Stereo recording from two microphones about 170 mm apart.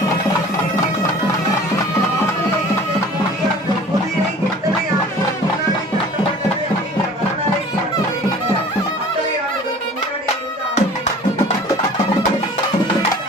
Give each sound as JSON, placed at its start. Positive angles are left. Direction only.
{"t": 10.8, "sound": "music", "side_deg": 45}